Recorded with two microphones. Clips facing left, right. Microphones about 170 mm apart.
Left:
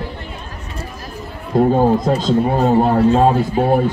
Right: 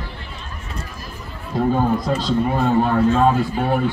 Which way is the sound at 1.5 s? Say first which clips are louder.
Left 5 dB; 45° left (ahead or behind).